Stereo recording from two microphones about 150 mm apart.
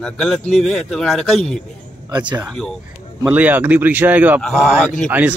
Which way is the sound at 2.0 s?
25° right (ahead or behind).